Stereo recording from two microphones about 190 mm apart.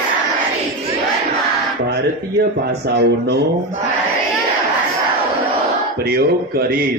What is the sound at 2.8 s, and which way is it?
Speech, 60° right (ahead or behind).